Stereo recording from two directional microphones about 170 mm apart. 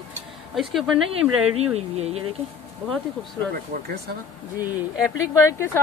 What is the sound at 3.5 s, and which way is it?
Speech, 65° right (ahead or behind).